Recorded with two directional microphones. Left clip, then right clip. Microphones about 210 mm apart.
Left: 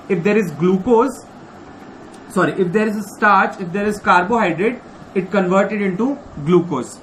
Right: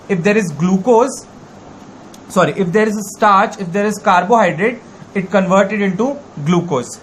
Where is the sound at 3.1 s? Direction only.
55° right (ahead or behind).